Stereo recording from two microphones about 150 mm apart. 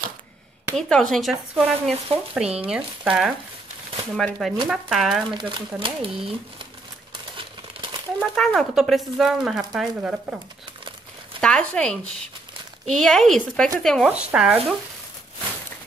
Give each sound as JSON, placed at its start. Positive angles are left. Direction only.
{"t": 0.7, "sound": "speech", "side_deg": 5}
{"t": 4.2, "sound": "speech", "side_deg": 5}
{"t": 5.3, "sound": "speech", "side_deg": -30}
{"t": 8.2, "sound": "speech", "side_deg": 0}
{"t": 11.4, "sound": "speech", "side_deg": 5}